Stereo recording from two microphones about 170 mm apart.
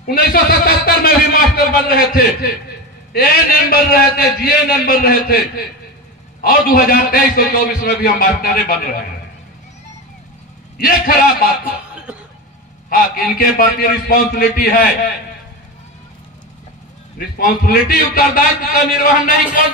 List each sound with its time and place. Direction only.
0.1 s a man's voice: 60° left (ahead or behind)
10.8 s a man's voice: 60° left (ahead or behind)
12.1 s a sound: 10° right (ahead or behind)
12.9 s a man's voice: 55° left (ahead or behind)
17.4 s a man's voice: 60° left (ahead or behind)